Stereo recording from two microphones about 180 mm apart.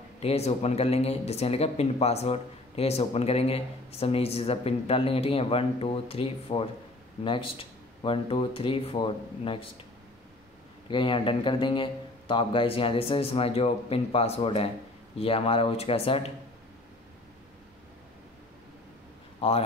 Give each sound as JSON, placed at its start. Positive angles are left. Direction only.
{"t": 0.2, "sound": "speech", "side_deg": 35}
{"t": 10.9, "sound": "speech", "side_deg": 30}
{"t": 19.4, "sound": "speech", "side_deg": 30}